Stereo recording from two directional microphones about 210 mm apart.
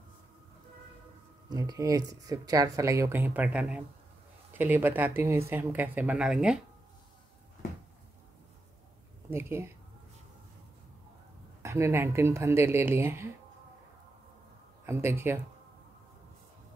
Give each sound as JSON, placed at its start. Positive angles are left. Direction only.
{"t": 1.5, "sound": "speech", "side_deg": -15}
{"t": 9.3, "sound": "speech", "side_deg": -10}
{"t": 11.6, "sound": "speech", "side_deg": -15}
{"t": 14.9, "sound": "speech", "side_deg": -10}